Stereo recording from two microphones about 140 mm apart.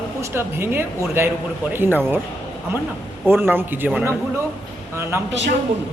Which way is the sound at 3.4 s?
15° right (ahead or behind).